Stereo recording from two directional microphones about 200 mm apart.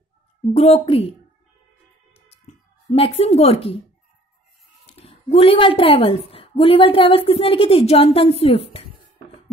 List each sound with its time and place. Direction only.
0.5 s speech: 30° left (ahead or behind)
2.1 s a sound: 30° left (ahead or behind)
2.9 s a woman's voice: 30° left (ahead or behind)
4.8 s a woman's voice: 30° left (ahead or behind)